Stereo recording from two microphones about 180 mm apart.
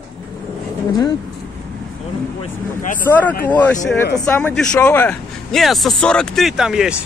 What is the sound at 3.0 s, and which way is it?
Speech, 10° left (ahead or behind).